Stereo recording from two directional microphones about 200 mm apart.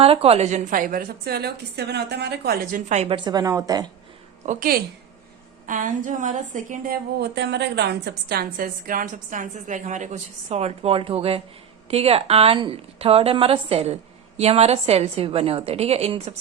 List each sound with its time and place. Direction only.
0.0 s a woman's voice: 30° right (ahead or behind); by 2.8 s 50° right (ahead or behind)
2.9 s a woman's voice: 30° right (ahead or behind)
4.4 s a woman's voice: 45° right (ahead or behind)